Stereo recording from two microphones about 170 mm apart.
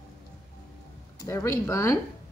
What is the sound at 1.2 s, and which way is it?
Speech, 15° left (ahead or behind).